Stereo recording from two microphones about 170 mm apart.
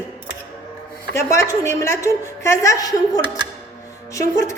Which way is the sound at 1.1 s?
15° left (ahead or behind).